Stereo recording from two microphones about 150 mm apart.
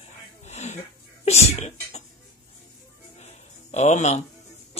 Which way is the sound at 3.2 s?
50° left (ahead or behind).